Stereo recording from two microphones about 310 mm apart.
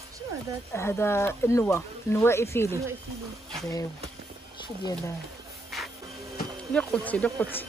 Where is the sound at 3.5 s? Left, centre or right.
Centre.